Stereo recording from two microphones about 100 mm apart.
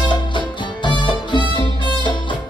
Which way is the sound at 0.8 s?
55° left (ahead or behind).